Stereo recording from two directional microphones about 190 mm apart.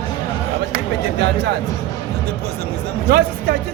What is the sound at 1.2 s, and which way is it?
Speech, 60° right (ahead or behind).